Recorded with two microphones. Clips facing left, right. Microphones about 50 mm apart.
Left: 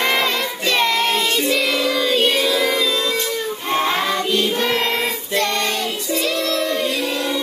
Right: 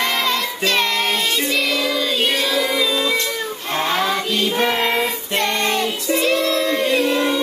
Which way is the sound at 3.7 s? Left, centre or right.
Centre.